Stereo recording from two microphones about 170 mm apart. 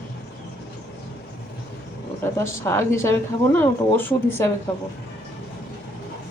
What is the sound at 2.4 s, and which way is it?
Speech, 15° left (ahead or behind).